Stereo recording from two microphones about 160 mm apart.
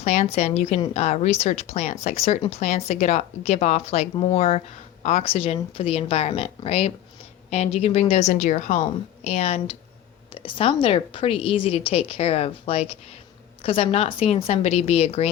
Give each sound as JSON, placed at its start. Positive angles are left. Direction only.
{"t": 0.0, "sound": "a woman's voice", "side_deg": 45}